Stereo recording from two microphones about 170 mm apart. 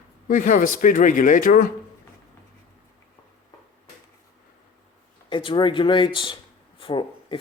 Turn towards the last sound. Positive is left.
turn(degrees=30)  # may be behind; listen again after turning